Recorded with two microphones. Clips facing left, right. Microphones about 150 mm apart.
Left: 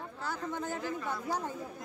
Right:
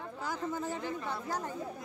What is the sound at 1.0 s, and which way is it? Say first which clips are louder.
Speech: left 2 dB; 15° left (ahead or behind).